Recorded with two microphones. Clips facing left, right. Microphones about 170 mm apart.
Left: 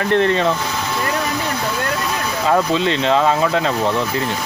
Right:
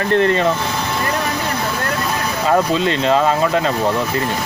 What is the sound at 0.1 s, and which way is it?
Speech, 20° left (ahead or behind).